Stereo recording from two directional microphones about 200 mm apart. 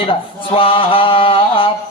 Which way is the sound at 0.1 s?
25° left (ahead or behind).